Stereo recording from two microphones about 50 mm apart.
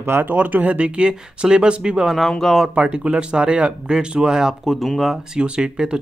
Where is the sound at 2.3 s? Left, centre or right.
Centre.